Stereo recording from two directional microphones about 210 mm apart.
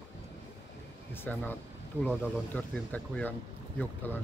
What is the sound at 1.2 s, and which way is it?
Speech, 10° left (ahead or behind).